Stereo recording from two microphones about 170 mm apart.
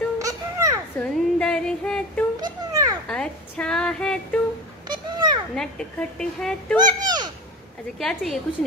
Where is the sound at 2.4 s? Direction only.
20° right (ahead or behind).